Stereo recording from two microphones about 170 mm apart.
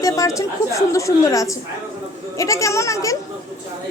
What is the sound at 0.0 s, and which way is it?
A woman's voice, 20° left (ahead or behind).